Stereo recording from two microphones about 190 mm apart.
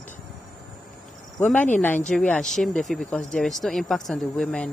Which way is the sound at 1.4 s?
5° left (ahead or behind).